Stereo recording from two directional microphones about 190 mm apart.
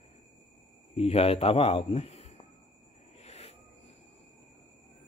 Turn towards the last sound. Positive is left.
turn(degrees=35)  # may be behind; listen again after turning